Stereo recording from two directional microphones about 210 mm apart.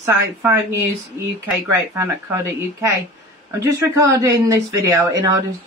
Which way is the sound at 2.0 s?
15° right (ahead or behind).